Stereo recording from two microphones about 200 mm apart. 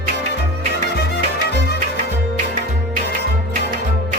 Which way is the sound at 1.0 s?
55° left (ahead or behind).